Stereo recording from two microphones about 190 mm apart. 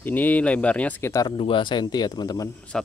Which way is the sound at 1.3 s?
25° left (ahead or behind).